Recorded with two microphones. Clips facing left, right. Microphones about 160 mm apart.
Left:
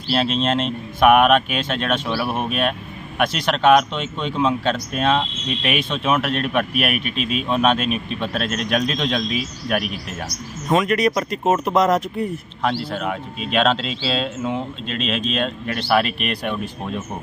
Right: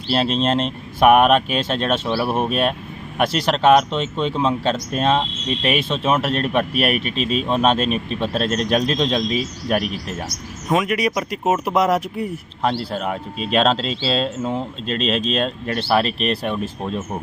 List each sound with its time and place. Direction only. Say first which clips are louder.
0.1 s speech: right 1 dB; 35° right (ahead or behind)
10.7 s speech: left 2 dB; 5° right (ahead or behind)
12.6 s speech: right 1 dB; 35° right (ahead or behind)